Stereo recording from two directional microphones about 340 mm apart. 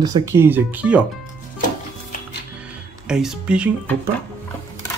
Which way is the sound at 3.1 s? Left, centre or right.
Centre.